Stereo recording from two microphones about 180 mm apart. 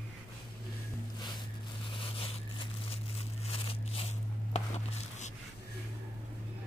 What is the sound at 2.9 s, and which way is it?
Tearing, 35° left (ahead or behind).